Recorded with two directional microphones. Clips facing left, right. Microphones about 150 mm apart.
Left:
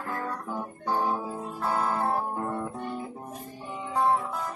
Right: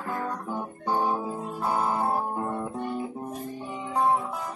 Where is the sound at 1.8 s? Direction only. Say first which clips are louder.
Right 1 dB; 10° right (ahead or behind).